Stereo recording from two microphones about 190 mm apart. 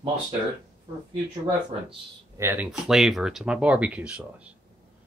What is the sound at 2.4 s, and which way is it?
Speech, 15° right (ahead or behind).